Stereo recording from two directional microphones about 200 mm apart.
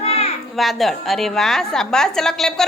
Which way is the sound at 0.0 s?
30° left (ahead or behind).